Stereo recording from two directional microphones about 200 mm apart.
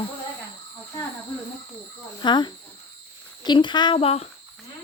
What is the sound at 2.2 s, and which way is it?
Speech, 20° left (ahead or behind).